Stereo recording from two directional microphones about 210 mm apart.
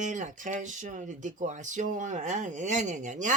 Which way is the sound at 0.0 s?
35° right (ahead or behind).